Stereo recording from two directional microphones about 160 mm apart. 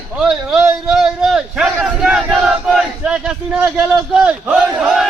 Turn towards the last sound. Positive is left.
turn(degrees=0)  # may be behind; listen again after turning